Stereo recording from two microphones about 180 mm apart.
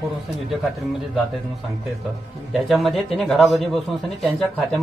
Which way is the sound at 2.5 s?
Centre (ahead or behind).